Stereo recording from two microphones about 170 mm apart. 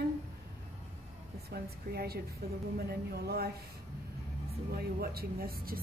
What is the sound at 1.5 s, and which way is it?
A woman's voice, 65° right (ahead or behind).